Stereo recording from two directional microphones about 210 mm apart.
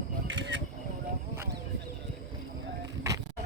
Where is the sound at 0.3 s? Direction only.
55° right (ahead or behind).